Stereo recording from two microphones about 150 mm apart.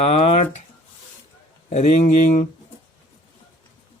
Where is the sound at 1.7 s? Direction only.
45° left (ahead or behind).